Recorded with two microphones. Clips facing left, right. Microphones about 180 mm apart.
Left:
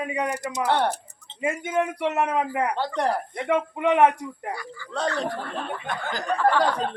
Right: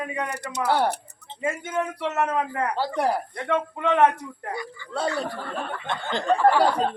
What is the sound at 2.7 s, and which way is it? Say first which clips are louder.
Speech: right 1 dB; 5° right (ahead or behind).